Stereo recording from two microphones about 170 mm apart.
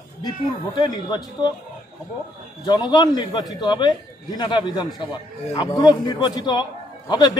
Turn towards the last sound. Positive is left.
turn(degrees=25)  # may be behind; listen again after turning